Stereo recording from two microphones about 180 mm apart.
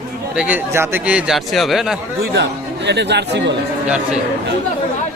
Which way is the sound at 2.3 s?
70° right (ahead or behind).